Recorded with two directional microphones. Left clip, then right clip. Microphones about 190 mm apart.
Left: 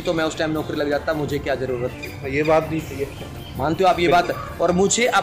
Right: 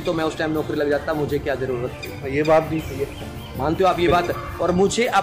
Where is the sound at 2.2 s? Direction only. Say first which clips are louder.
Right 1 dB; 5° right (ahead or behind).